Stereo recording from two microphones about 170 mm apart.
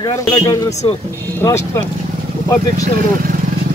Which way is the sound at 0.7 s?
40° left (ahead or behind).